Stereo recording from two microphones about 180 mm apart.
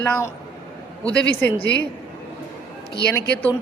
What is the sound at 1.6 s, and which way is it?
Speech, 65° left (ahead or behind).